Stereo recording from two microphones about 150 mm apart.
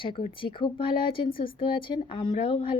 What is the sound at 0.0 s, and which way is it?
A woman's voice, 35° left (ahead or behind).